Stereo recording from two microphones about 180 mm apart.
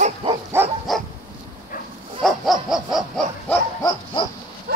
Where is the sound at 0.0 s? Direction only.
30° right (ahead or behind).